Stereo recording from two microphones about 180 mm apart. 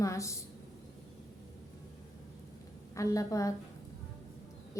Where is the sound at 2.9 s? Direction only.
15° left (ahead or behind).